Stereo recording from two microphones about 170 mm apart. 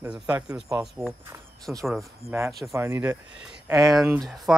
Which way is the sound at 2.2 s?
15° right (ahead or behind).